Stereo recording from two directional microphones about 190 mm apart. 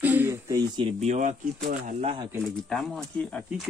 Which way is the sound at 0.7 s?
35° right (ahead or behind).